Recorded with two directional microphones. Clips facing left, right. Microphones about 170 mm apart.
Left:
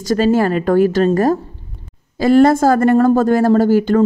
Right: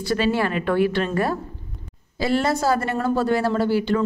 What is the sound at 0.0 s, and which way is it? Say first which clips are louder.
A woman's voice: left 7 dB; 40° left (ahead or behind).